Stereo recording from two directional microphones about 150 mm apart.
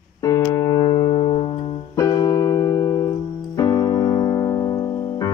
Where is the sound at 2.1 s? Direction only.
25° left (ahead or behind).